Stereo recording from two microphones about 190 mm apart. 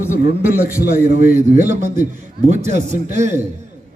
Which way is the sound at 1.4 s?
35° right (ahead or behind).